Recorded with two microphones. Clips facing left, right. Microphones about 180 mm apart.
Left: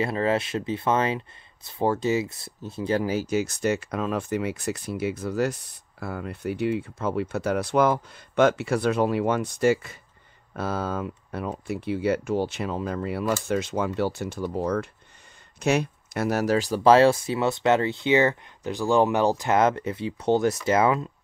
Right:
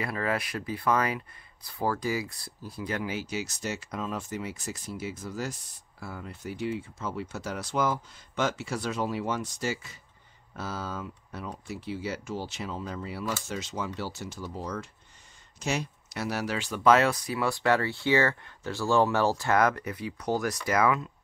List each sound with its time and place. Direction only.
0.0 s speech: 25° left (ahead or behind)
3.0 s speech: 40° left (ahead or behind)